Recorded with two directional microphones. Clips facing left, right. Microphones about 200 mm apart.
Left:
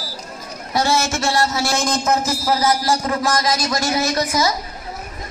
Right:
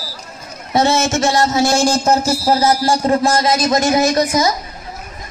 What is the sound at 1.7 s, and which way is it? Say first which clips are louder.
Speech: right 5 dB; 30° right (ahead or behind).